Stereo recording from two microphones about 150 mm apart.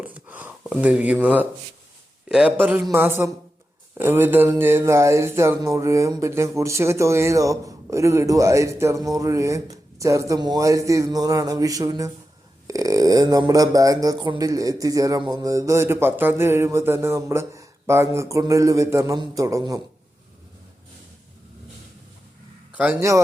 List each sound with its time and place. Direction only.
0.0 s gasp: 10° right (ahead or behind)
2.3 s a man's voice: 10° right (ahead or behind)
22.7 s a man's voice: 10° right (ahead or behind)